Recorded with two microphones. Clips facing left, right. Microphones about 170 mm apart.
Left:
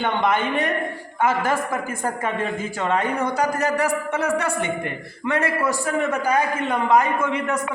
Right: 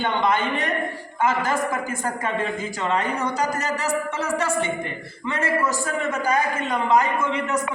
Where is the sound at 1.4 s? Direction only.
55° left (ahead or behind).